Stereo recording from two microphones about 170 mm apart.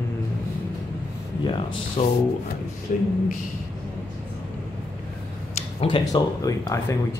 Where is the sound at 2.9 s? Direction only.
55° left (ahead or behind).